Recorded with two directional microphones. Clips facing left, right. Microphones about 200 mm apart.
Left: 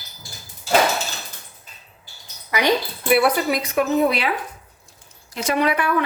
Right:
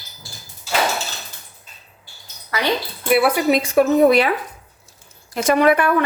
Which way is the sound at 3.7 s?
45° right (ahead or behind).